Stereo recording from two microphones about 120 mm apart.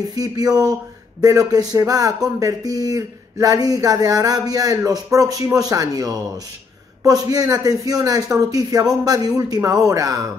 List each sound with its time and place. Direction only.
0.1 s speech: 30° right (ahead or behind)